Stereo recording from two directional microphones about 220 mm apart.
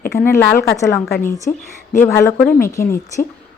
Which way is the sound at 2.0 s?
10° left (ahead or behind).